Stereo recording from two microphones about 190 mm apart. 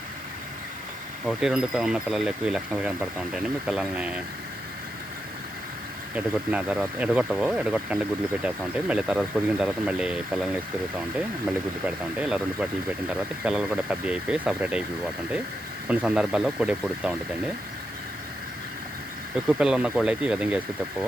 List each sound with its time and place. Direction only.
1.2 s speech: 5° right (ahead or behind)
6.1 s speech: 5° right (ahead or behind)
15.9 s speech: 5° right (ahead or behind)
19.5 s speech: 5° right (ahead or behind)